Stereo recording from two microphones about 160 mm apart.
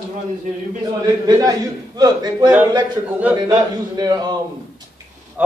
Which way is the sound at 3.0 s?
10° right (ahead or behind).